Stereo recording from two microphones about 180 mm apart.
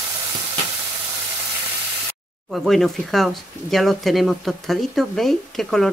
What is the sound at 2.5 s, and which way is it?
Speech, centre (ahead or behind).